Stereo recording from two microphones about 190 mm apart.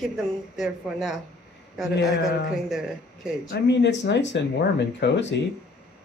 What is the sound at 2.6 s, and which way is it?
Speech, centre (ahead or behind).